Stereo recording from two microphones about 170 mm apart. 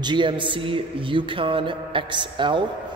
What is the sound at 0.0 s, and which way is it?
A man's voice, 25° right (ahead or behind).